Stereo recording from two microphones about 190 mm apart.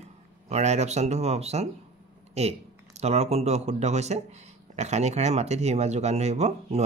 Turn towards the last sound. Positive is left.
turn(degrees=-35)  # may be behind; listen again after turning